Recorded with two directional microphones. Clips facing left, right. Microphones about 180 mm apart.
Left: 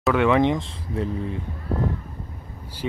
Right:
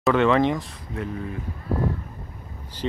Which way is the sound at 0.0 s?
10° left (ahead or behind).